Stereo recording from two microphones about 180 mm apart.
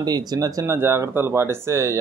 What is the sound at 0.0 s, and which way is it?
Speech, 20° right (ahead or behind).